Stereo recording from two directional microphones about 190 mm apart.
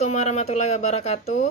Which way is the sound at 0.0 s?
35° left (ahead or behind).